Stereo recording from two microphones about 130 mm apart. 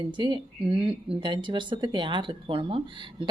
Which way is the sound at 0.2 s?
40° right (ahead or behind).